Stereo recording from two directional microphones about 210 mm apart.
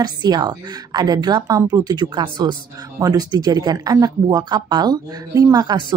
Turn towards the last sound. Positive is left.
turn(degrees=-20)  # may be behind; listen again after turning